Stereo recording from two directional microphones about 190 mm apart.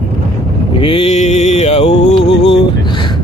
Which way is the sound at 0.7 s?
30° left (ahead or behind).